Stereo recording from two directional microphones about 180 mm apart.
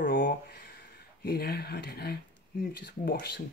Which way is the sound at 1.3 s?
60° left (ahead or behind).